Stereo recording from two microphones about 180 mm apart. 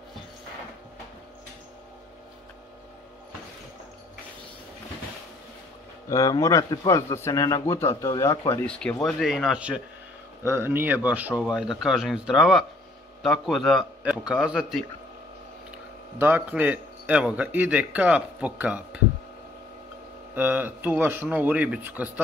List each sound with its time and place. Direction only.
6.0 s speech: 20° left (ahead or behind); by 14.9 s centre (ahead or behind)
16.2 s speech: 10° right (ahead or behind)
20.3 s speech: 10° right (ahead or behind)